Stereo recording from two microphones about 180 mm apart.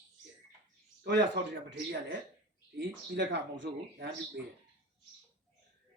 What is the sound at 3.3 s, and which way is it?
Speech, 85° right.